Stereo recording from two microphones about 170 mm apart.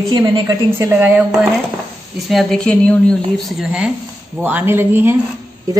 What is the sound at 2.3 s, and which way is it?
A woman's voice, centre (ahead or behind).